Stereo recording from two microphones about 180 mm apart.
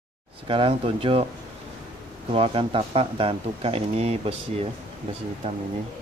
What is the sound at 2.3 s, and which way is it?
Speech, 30° right (ahead or behind).